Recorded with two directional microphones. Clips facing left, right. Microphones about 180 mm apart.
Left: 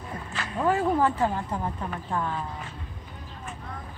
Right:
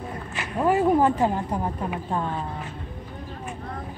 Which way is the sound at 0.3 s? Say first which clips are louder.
Right 3 dB; 15° right (ahead or behind).